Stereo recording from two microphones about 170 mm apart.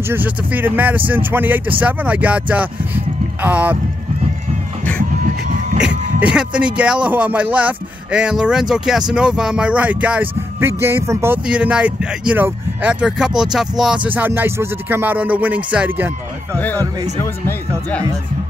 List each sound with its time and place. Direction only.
0.1 s speech: 10° right (ahead or behind)
5.2 s a sound: 45° right (ahead or behind)
5.8 s speech: 5° right (ahead or behind)
16.7 s speech: 20° right (ahead or behind)
17.2 s speech: 10° left (ahead or behind)